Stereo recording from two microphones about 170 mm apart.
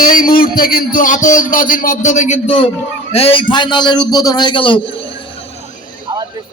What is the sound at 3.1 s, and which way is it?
A man's voice, 35° left (ahead or behind).